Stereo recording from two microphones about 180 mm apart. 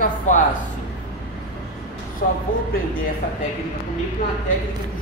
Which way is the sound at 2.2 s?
50° left (ahead or behind).